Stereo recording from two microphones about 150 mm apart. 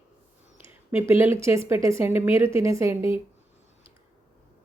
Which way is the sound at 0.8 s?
15° right (ahead or behind).